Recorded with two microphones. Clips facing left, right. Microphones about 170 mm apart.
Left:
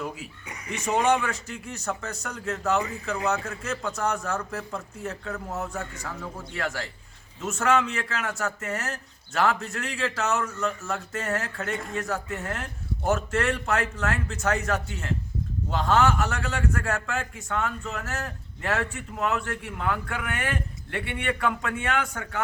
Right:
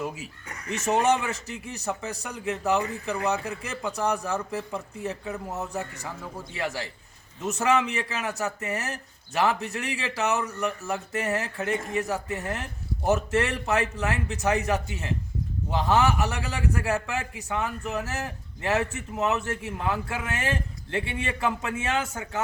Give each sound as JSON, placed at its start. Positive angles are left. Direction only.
{"t": 0.4, "sound": "speech", "side_deg": 10}
{"t": 1.1, "sound": "a man's voice", "side_deg": -20}